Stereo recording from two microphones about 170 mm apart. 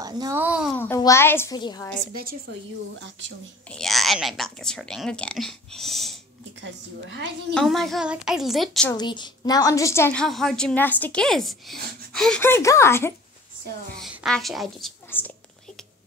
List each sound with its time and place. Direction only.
0.0 s a child's voice: 20° right (ahead or behind)
0.4 s a child's voice: 5° right (ahead or behind)
0.7 s a woman's voice: 15° left (ahead or behind)
1.6 s a woman's voice: 25° left (ahead or behind)
3.0 s a woman's voice: 90° right
3.7 s speech: centre (ahead or behind)
6.6 s a woman's voice: 90° right
7.5 s speech: centre (ahead or behind)
8.9 s a woman's voice: 25° left (ahead or behind)
10.2 s speech: centre (ahead or behind)
13.9 s speech: centre (ahead or behind)
15.0 s speech: 10° left (ahead or behind)